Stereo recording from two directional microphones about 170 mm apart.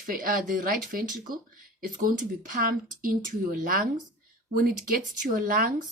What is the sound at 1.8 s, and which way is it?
Speech, 50° right (ahead or behind).